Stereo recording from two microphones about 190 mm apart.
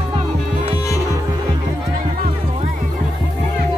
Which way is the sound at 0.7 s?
20° left (ahead or behind).